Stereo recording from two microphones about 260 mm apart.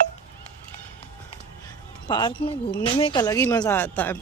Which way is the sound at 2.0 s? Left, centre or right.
Centre.